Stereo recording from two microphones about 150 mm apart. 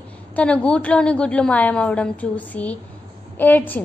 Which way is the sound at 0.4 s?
5° left (ahead or behind).